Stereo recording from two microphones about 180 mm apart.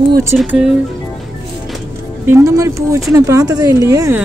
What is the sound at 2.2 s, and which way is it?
A woman's voice, 15° right (ahead or behind).